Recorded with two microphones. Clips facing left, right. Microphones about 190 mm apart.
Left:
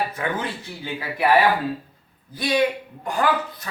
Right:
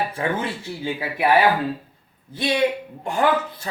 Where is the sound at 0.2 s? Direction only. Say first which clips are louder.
Right 5 dB; 30° right (ahead or behind).